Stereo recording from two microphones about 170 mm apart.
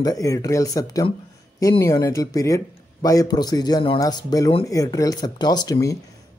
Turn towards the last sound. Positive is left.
turn(degrees=20)  # may be behind; listen again after turning